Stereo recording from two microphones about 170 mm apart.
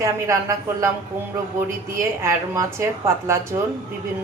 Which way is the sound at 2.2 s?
15° right (ahead or behind).